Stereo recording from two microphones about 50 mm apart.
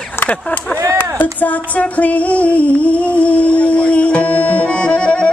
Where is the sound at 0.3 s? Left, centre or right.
Left.